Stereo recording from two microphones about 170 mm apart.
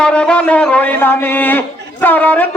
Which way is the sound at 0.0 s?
5° left (ahead or behind).